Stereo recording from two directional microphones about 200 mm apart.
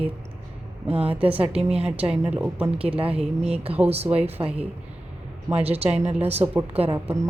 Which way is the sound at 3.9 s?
30° right (ahead or behind).